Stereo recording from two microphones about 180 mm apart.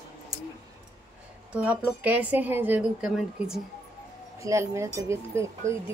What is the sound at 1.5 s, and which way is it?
Speech, 5° right (ahead or behind).